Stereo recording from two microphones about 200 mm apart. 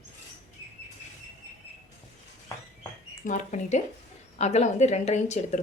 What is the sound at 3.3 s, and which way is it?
A woman's voice, 40° left (ahead or behind).